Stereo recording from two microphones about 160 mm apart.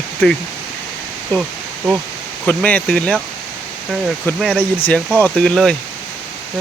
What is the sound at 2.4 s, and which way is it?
Speech, 10° left (ahead or behind).